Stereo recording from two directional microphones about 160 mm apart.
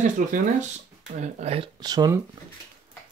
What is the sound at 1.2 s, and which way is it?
Speech, 40° right (ahead or behind).